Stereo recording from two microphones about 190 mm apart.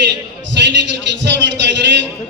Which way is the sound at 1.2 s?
70° right (ahead or behind).